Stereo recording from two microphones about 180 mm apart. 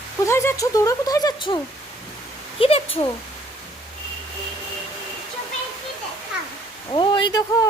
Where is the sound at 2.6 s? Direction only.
30° left (ahead or behind).